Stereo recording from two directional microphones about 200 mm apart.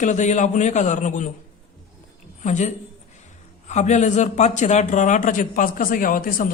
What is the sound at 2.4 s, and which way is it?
A woman's voice, 35° left (ahead or behind).